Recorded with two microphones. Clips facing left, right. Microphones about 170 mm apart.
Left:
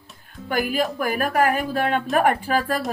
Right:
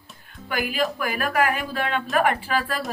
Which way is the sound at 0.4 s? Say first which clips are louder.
Left 2 dB; 45° left (ahead or behind).